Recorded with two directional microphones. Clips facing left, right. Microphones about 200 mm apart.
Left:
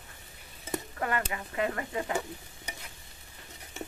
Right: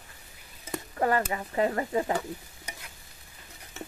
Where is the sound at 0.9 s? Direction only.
35° right (ahead or behind).